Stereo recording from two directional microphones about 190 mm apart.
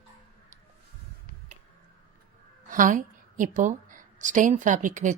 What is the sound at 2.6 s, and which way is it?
A woman's voice, 45° right (ahead or behind).